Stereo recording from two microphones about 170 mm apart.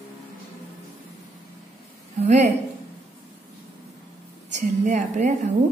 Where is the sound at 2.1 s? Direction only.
45° right (ahead or behind).